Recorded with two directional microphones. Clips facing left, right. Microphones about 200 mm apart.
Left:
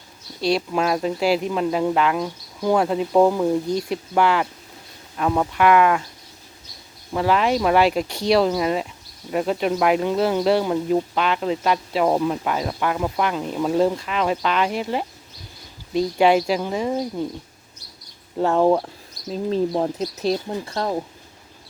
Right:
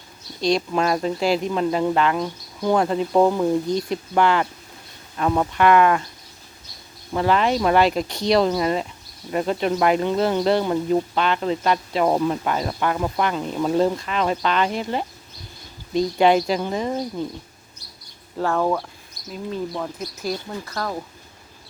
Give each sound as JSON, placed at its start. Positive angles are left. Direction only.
{"t": 0.4, "sound": "speech", "side_deg": 5}
{"t": 7.1, "sound": "speech", "side_deg": 5}
{"t": 18.3, "sound": "speech", "side_deg": 20}